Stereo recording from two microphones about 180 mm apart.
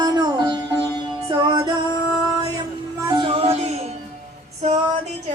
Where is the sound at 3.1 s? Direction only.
30° right (ahead or behind).